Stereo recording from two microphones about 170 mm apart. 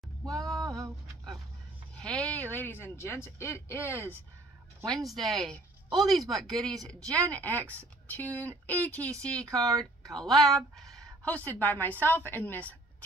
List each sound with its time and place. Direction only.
0.3 s a sound: centre (ahead or behind)
0.7 s a sound: 20° right (ahead or behind)
2.0 s speech: 5° left (ahead or behind)
4.8 s speech: centre (ahead or behind)
7.1 s speech: 20° right (ahead or behind)
7.3 s speech: 10° left (ahead or behind)